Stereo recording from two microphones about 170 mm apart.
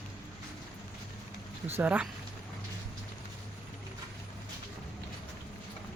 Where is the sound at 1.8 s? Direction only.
10° right (ahead or behind).